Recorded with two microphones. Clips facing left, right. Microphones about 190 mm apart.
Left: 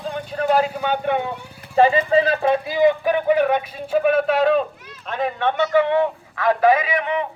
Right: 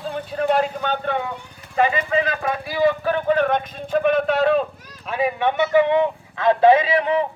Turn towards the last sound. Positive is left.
turn(degrees=-35)  # may be behind; listen again after turning